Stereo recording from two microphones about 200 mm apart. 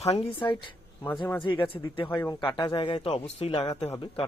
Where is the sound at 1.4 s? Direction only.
25° left (ahead or behind).